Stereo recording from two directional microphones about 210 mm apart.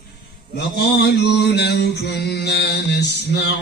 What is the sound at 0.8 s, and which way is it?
Mantra, 50° left (ahead or behind).